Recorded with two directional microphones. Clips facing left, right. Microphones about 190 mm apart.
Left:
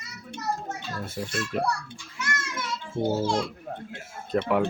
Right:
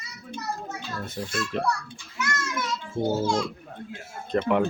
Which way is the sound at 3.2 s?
30° left (ahead or behind).